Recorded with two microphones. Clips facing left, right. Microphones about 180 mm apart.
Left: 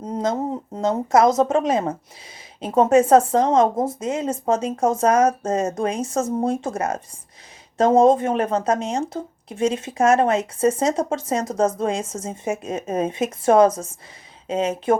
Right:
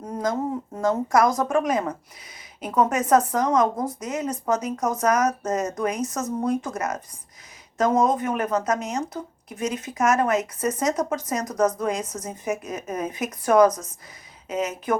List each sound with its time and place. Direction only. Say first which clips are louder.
0.0 s speech: left 2 dB; 25° left (ahead or behind)